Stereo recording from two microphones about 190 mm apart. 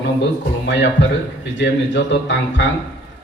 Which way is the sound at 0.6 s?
65° left (ahead or behind).